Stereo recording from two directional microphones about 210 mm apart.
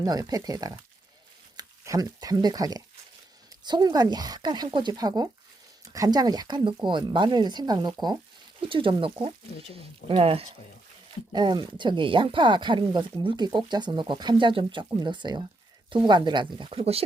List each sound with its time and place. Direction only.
0.0 s speech: 15° right (ahead or behind)